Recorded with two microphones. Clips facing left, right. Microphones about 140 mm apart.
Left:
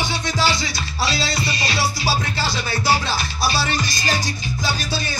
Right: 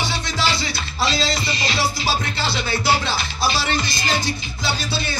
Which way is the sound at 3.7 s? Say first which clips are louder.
Even; 45° left (ahead or behind).